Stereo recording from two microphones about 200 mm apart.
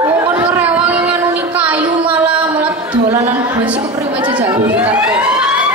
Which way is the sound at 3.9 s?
5° right (ahead or behind).